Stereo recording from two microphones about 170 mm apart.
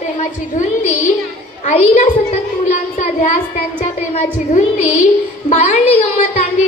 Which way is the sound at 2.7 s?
45° left (ahead or behind).